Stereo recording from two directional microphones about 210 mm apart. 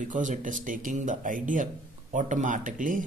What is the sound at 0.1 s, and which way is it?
Speech, 35° right (ahead or behind).